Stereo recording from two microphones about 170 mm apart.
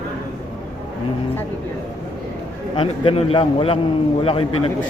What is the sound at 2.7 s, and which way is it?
A man's voice, 30° left (ahead or behind).